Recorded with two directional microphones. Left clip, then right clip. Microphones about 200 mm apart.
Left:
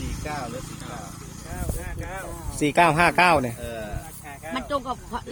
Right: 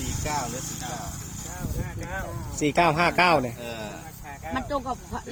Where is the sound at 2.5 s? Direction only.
25° left (ahead or behind).